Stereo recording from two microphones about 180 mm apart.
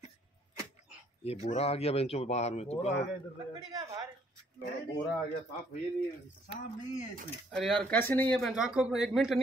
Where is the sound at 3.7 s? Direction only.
20° right (ahead or behind).